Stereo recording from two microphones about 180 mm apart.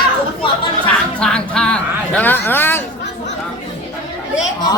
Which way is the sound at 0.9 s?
5° left (ahead or behind).